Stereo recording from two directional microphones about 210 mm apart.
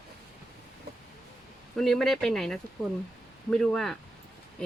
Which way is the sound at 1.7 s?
Centre (ahead or behind).